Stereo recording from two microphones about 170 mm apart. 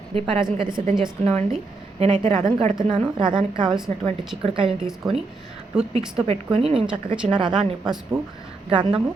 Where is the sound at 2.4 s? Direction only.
40° right (ahead or behind).